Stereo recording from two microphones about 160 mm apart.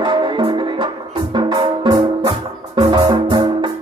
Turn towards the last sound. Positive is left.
turn(degrees=-25)  # may be behind; listen again after turning